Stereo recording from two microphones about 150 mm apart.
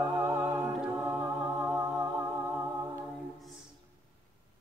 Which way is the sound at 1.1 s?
20° right (ahead or behind).